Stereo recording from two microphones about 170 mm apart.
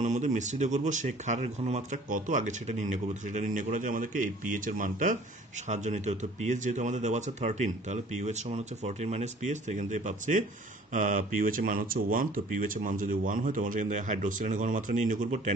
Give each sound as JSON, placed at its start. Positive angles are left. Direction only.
{"t": 0.0, "sound": "speech", "side_deg": -45}